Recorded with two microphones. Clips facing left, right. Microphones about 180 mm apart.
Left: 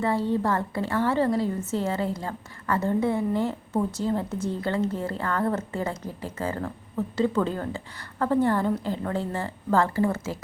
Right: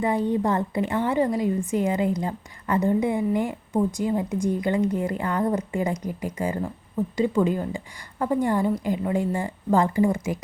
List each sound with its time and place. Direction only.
0.0 s a woman's voice: 15° right (ahead or behind)